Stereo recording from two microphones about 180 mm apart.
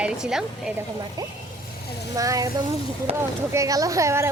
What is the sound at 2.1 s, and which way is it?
Speech, 20° right (ahead or behind).